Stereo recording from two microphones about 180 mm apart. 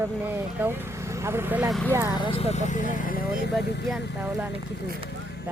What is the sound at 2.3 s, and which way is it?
Speech, 35° left (ahead or behind).